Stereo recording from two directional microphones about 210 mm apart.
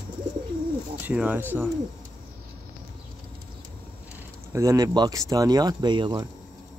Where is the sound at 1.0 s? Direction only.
5° right (ahead or behind).